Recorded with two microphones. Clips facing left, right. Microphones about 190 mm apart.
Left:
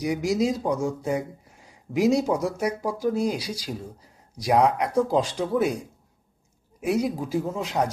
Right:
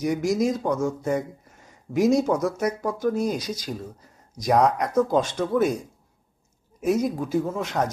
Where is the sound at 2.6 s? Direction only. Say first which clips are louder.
Right 1 dB; 10° left (ahead or behind).